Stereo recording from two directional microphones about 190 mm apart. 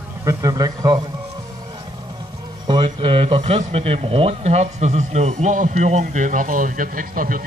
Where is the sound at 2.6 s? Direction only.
25° right (ahead or behind).